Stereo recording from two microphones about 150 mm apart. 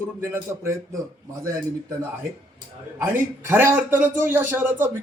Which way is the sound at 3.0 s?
15° right (ahead or behind).